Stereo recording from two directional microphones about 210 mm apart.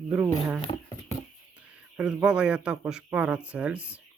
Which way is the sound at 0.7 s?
25° left (ahead or behind).